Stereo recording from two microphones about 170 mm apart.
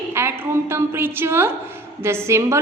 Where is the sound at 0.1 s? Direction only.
15° right (ahead or behind).